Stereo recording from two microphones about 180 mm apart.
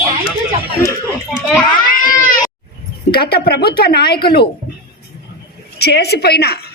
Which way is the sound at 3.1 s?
60° left (ahead or behind).